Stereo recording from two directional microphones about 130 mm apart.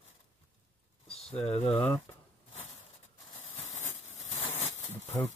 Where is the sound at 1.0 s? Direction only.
5° left (ahead or behind).